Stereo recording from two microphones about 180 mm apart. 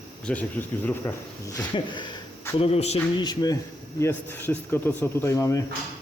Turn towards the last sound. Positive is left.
turn(degrees=20)  # may be behind; listen again after turning